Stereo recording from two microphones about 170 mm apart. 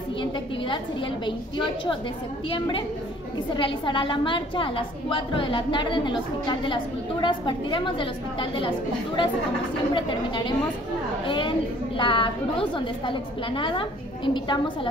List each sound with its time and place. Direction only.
1.2 s a woman's voice: 30° left (ahead or behind)